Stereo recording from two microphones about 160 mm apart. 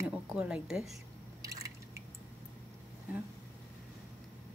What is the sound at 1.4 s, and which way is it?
Drip, 20° right (ahead or behind).